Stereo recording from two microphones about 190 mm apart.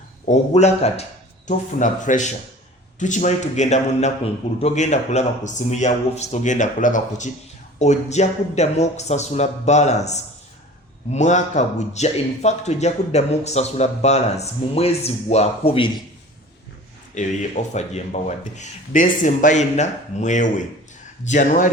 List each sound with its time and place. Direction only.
0.3 s a man's voice: 35° left (ahead or behind)
17.7 s a man's voice: 35° left (ahead or behind)